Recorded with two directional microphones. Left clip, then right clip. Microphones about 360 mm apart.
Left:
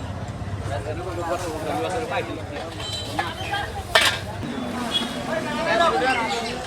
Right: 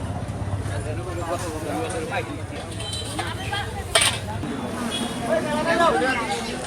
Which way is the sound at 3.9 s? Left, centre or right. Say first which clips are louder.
Left 2 dB; centre.